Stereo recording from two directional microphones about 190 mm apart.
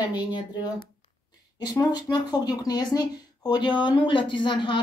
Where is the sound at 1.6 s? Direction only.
20° left (ahead or behind).